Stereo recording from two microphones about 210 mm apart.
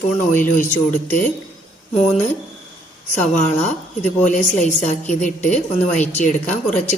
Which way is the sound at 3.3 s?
35° left (ahead or behind).